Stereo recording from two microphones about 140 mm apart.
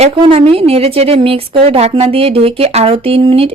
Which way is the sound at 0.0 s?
45° right (ahead or behind).